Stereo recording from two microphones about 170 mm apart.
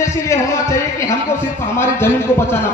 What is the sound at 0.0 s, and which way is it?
A man's voice, 15° left (ahead or behind).